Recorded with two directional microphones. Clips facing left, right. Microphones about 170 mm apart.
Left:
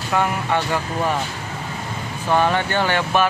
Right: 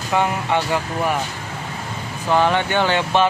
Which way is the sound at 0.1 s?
15° right (ahead or behind).